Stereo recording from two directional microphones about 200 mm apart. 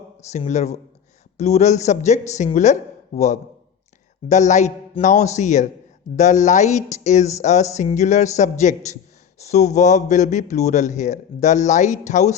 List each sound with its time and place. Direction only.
0.3 s a man's voice: 35° left (ahead or behind)